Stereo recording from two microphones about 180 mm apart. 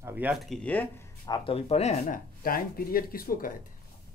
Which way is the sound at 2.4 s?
55° left (ahead or behind).